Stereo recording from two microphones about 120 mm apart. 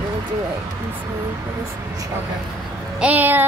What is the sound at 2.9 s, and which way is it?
Speech, 10° right (ahead or behind).